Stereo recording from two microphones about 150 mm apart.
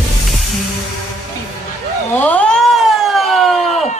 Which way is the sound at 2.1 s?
10° left (ahead or behind).